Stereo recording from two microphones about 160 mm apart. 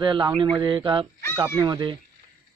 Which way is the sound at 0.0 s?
30° right (ahead or behind).